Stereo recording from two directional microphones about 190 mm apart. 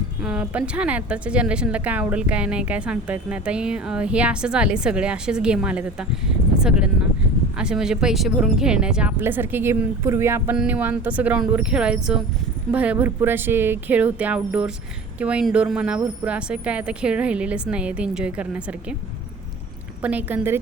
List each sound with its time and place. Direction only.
0.2 s a woman's voice: 5° right (ahead or behind)
20.0 s speech: 10° right (ahead or behind)